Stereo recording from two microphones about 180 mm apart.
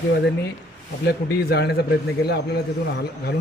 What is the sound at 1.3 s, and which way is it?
Speech, 65° left (ahead or behind).